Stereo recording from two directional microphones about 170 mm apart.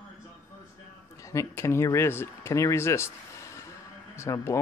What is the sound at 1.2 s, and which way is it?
Speech, 20° left (ahead or behind).